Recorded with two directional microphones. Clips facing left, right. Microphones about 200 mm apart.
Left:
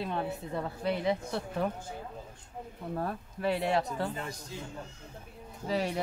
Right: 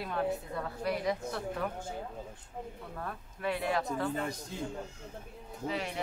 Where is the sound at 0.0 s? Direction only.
25° left (ahead or behind).